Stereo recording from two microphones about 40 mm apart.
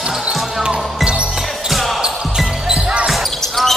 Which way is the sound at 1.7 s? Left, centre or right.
Centre.